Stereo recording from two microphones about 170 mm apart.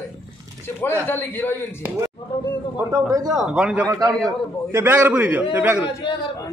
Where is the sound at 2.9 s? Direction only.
20° right (ahead or behind).